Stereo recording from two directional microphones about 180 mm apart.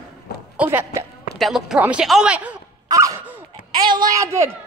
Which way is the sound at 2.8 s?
20° right (ahead or behind).